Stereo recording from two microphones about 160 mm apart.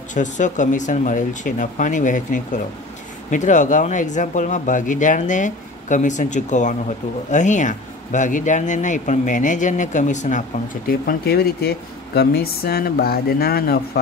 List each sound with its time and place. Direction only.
0.1 s speech: 50° left (ahead or behind)
10.9 s speech: 75° left (ahead or behind)